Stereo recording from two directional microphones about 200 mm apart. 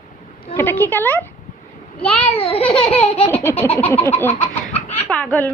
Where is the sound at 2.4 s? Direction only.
30° left (ahead or behind).